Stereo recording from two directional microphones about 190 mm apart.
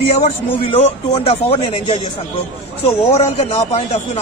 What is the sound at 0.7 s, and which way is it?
Speech, 35° left (ahead or behind).